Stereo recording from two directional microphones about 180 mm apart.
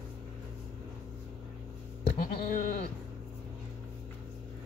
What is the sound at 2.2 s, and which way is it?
Sheep, 50° left (ahead or behind).